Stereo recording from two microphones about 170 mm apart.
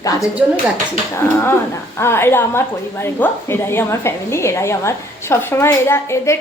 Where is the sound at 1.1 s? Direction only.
15° left (ahead or behind).